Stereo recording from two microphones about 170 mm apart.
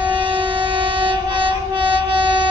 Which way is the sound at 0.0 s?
30° right (ahead or behind).